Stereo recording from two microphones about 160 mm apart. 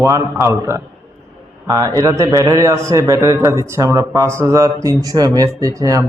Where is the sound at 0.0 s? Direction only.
20° right (ahead or behind).